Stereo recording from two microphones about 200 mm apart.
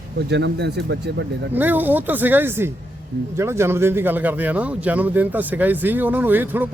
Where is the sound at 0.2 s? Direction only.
60° right (ahead or behind).